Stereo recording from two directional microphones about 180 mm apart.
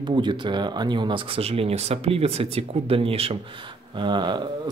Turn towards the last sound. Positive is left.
turn(degrees=-25)  # may be behind; listen again after turning